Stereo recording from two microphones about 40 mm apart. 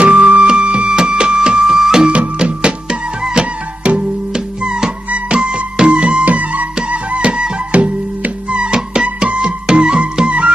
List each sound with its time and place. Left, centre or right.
0.0 s music: right
2.1 s music: right